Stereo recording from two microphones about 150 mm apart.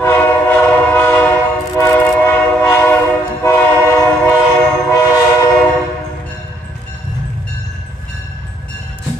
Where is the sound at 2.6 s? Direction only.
15° left (ahead or behind).